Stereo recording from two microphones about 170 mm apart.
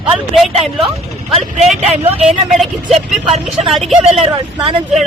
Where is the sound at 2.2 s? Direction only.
Centre (ahead or behind).